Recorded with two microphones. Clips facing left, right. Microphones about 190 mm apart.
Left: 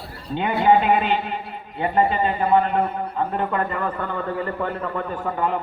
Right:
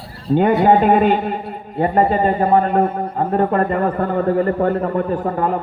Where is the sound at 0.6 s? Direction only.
45° right (ahead or behind).